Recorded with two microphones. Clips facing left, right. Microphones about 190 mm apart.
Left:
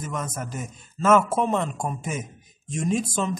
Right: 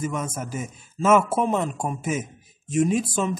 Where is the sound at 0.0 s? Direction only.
10° right (ahead or behind).